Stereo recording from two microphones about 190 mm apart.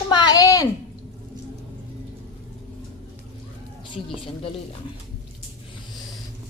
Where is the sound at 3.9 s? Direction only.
30° left (ahead or behind).